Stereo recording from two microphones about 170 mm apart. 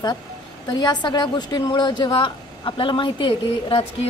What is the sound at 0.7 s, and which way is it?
A woman's voice, 25° left (ahead or behind).